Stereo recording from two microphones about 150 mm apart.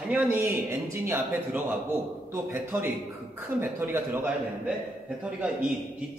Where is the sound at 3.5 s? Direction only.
15° right (ahead or behind).